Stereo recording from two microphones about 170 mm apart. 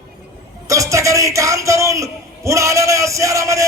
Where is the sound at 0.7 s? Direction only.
20° right (ahead or behind).